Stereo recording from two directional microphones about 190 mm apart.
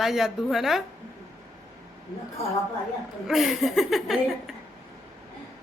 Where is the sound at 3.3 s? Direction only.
Centre (ahead or behind).